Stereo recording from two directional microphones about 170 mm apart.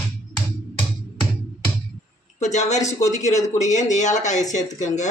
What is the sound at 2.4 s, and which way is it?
Speech, 45° left (ahead or behind).